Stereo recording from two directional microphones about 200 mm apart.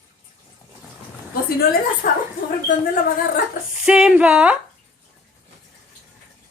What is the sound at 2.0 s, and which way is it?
Speech, 45° left (ahead or behind).